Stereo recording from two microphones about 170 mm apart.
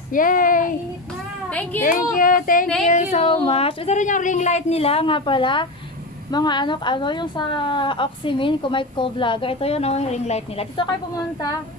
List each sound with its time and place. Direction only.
0.1 s speech: 55° left (ahead or behind)
1.5 s a woman's voice: 10° left (ahead or behind)
1.8 s a woman's voice: 55° left (ahead or behind); by 10.9 s 35° left (ahead or behind)